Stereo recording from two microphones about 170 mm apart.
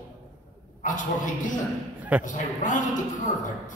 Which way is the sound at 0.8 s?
50° left (ahead or behind).